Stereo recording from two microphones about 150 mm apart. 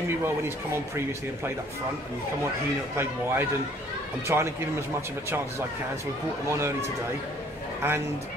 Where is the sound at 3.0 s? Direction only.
15° right (ahead or behind).